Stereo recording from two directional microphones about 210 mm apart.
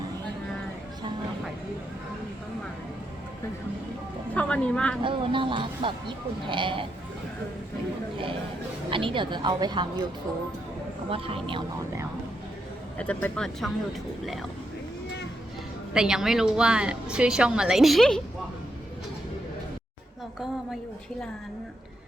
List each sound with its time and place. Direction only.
4.4 s a woman's voice: 5° left (ahead or behind)
5.0 s speech: 25° right (ahead or behind)
8.9 s speech: 25° right (ahead or behind)
11.1 s speech: 25° right (ahead or behind)
13.0 s a woman's voice: 5° left (ahead or behind)
15.9 s a woman's voice: 5° right (ahead or behind)